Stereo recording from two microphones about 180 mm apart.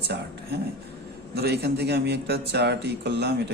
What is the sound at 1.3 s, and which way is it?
Speech, 60° right (ahead or behind).